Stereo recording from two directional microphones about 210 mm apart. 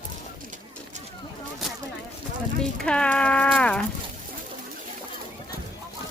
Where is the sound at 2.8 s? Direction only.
5° left (ahead or behind).